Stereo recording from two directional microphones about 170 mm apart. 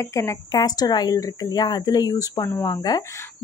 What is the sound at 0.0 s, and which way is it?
A woman's voice, 20° left (ahead or behind).